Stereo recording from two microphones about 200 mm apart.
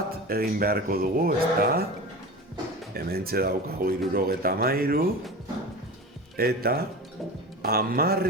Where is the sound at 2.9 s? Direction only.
50° right (ahead or behind).